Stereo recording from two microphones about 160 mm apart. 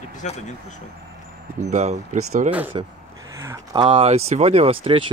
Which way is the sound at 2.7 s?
30° right (ahead or behind).